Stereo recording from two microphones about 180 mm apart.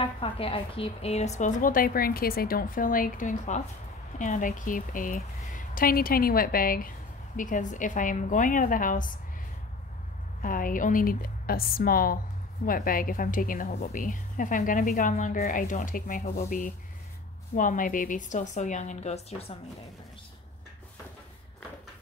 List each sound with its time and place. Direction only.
0.0 s a woman's voice: 30° left (ahead or behind); by 9.2 s 45° left (ahead or behind)
10.4 s a woman's voice: 50° left (ahead or behind)